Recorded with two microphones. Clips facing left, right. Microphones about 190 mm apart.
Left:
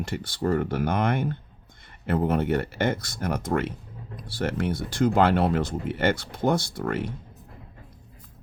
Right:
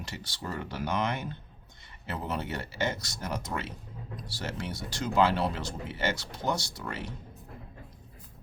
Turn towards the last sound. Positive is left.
turn(degrees=55)  # may be behind; listen again after turning